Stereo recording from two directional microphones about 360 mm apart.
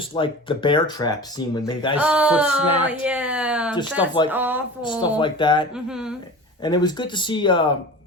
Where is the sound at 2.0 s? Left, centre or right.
Centre.